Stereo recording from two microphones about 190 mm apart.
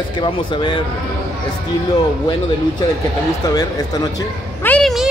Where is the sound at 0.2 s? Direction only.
25° left (ahead or behind).